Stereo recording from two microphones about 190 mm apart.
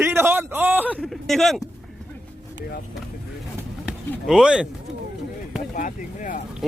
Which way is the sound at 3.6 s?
5° right (ahead or behind).